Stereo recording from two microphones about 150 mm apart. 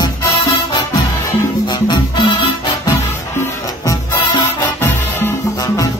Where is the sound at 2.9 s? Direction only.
20° left (ahead or behind).